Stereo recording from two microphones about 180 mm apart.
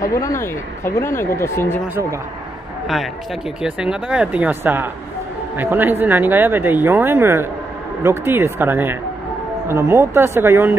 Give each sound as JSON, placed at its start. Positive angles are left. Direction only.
{"t": 0.0, "sound": "speech", "side_deg": 15}
{"t": 3.6, "sound": "speech", "side_deg": -5}